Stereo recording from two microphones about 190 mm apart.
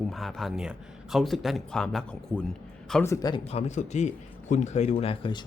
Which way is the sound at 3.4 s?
35° left (ahead or behind).